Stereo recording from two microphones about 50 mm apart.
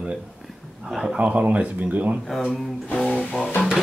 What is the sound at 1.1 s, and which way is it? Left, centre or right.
Speech, right.